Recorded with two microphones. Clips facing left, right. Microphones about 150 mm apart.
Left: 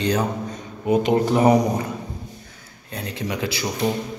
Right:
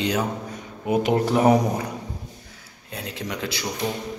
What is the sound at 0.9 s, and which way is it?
Speech, 10° right (ahead or behind).